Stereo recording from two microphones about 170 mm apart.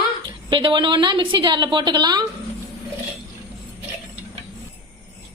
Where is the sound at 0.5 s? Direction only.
30° right (ahead or behind).